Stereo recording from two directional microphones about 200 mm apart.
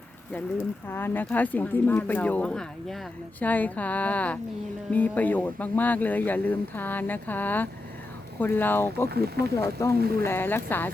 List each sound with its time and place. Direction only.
0.9 s speech: 10° left (ahead or behind)
9.0 s speech: 50° right (ahead or behind)
9.6 s speech: 15° left (ahead or behind)
10.0 s speech: 50° right (ahead or behind)
10.2 s speech: 10° left (ahead or behind)